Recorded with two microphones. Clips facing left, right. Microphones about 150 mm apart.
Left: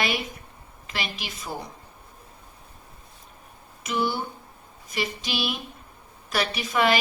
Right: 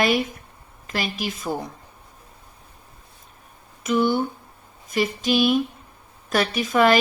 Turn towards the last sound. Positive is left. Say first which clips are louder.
# right 5 dB
turn(degrees=-45)  # may be behind; listen again after turning